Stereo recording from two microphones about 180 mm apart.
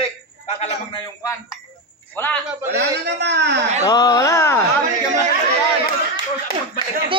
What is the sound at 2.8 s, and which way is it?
Speech, 70° right (ahead or behind).